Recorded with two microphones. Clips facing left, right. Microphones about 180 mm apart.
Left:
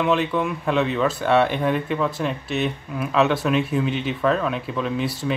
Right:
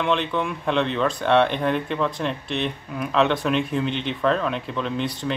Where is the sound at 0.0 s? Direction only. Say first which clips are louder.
Left 2 dB; 5° left (ahead or behind).